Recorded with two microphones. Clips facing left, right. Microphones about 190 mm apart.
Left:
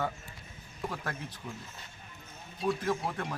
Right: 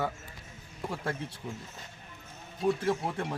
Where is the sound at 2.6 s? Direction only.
25° right (ahead or behind).